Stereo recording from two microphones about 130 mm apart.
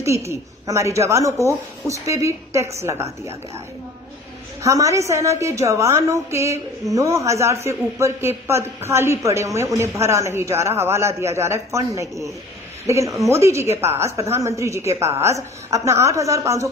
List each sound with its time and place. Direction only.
0.3 s a woman's voice: 20° right (ahead or behind)
4.6 s a woman's voice: 25° right (ahead or behind)